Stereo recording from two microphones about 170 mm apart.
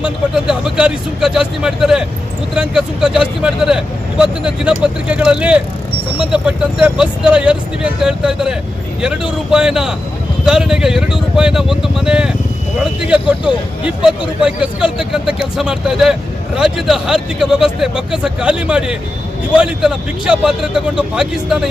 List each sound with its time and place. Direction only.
0.0 s speech: 5° right (ahead or behind)